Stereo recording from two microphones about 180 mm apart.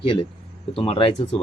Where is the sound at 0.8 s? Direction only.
30° left (ahead or behind).